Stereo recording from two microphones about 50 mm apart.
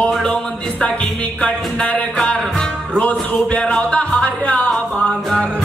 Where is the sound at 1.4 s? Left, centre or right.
Left.